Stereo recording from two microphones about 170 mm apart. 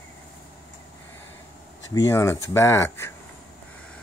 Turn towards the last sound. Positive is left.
turn(degrees=15)  # may be behind; listen again after turning